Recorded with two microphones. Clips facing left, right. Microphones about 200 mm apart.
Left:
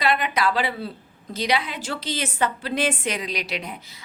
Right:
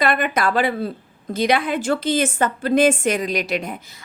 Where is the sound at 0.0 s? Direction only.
50° right (ahead or behind).